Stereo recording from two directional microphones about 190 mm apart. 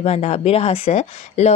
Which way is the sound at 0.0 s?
35° left (ahead or behind).